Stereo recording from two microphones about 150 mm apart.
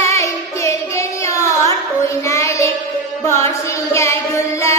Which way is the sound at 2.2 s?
20° left (ahead or behind).